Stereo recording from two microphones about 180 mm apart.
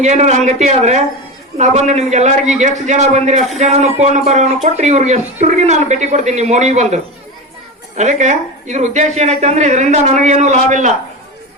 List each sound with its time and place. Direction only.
0.0 s speech: 40° right (ahead or behind)